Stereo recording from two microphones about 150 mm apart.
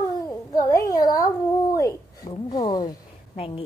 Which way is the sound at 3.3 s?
40° left (ahead or behind).